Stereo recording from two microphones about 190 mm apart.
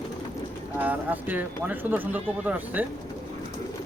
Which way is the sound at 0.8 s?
10° right (ahead or behind).